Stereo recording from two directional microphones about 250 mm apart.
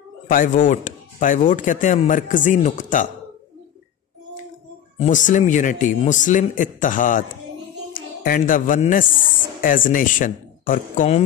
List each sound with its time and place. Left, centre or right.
0.3 s speech: left
4.9 s speech: left